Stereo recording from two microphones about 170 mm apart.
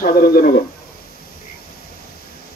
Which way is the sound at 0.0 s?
60° left (ahead or behind).